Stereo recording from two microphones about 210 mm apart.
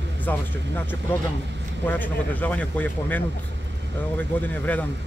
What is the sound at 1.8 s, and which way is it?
A man's voice, 10° left (ahead or behind).